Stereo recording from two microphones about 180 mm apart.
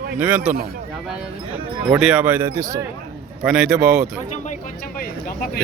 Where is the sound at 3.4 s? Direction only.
5° right (ahead or behind).